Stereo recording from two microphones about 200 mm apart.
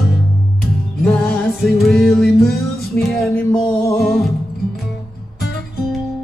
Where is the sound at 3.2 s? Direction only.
5° left (ahead or behind).